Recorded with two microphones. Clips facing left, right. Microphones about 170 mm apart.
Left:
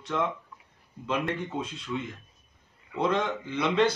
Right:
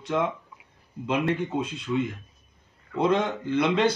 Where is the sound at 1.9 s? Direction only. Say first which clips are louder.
Right 7 dB; 25° right (ahead or behind).